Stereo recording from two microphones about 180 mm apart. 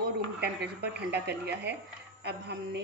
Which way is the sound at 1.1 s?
70° right (ahead or behind).